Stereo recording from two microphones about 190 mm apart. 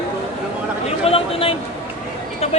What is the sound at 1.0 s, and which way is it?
Speech, 30° left (ahead or behind).